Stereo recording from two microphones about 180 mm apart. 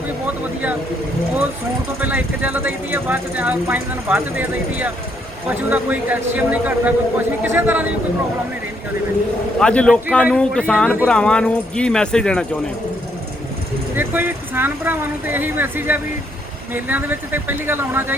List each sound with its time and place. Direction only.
2.0 s speech: 10° right (ahead or behind)
9.6 s speech: 5° left (ahead or behind)
13.9 s speech: 10° right (ahead or behind)